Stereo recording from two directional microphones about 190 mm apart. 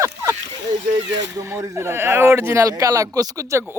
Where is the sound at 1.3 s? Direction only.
15° right (ahead or behind).